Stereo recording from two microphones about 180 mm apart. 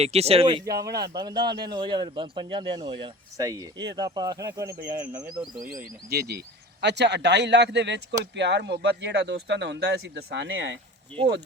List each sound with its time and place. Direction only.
0.0 s speech: 35° right (ahead or behind); by 4.8 s 20° right (ahead or behind)
4.8 s speech: 50° right (ahead or behind)
5.6 s speech: 60° right (ahead or behind); by 10.8 s 80° right
11.1 s speech: 5° left (ahead or behind)